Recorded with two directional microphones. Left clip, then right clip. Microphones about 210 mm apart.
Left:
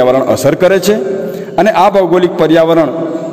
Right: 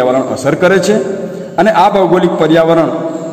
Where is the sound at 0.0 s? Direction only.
40° left (ahead or behind).